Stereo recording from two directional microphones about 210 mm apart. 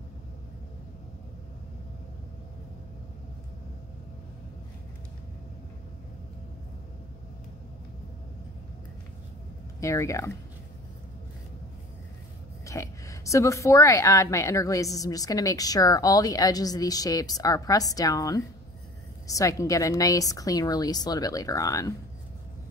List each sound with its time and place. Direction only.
9.8 s a woman's voice: 15° left (ahead or behind)
12.6 s a woman's voice: 15° left (ahead or behind)